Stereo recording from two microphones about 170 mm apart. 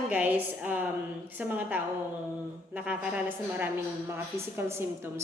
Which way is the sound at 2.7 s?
10° right (ahead or behind).